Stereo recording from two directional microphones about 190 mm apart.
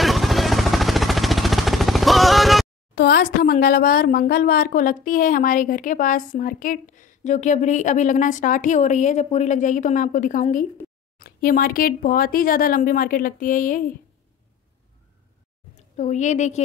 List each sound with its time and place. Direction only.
0.0 s a sound: centre (ahead or behind)
2.9 s speech: 60° left (ahead or behind)
15.7 s a woman's voice: 40° left (ahead or behind)